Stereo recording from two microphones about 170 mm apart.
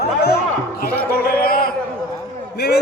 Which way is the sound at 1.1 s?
60° left (ahead or behind).